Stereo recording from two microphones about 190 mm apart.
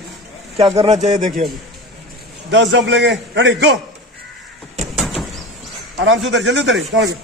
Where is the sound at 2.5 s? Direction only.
70° right (ahead or behind).